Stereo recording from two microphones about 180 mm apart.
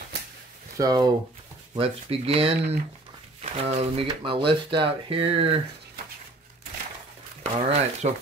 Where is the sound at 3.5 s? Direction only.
35° right (ahead or behind).